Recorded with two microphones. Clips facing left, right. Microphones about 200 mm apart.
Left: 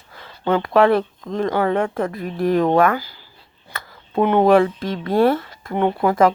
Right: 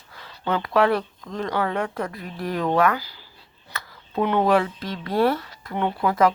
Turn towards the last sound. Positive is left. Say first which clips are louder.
# left 4 dB
turn(degrees=50)  # may be behind; listen again after turning